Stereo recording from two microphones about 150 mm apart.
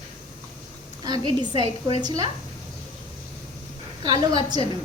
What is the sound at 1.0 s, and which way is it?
Speech, 25° right (ahead or behind).